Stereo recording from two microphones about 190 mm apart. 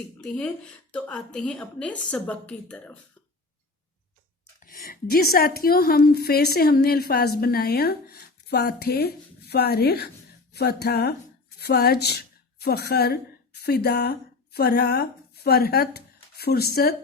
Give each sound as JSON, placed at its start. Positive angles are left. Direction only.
{"t": 0.2, "sound": "a woman's voice", "side_deg": 5}
{"t": 4.6, "sound": "a woman's voice", "side_deg": 50}